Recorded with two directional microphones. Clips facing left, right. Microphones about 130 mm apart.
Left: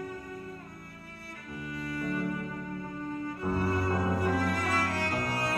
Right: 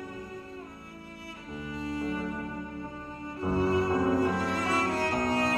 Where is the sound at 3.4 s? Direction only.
20° right (ahead or behind).